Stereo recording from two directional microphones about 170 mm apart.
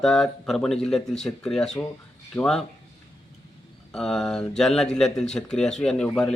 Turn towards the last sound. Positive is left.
turn(degrees=5)  # may be behind; listen again after turning